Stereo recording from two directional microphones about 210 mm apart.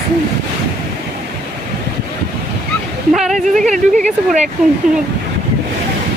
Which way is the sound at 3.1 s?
Centre (ahead or behind).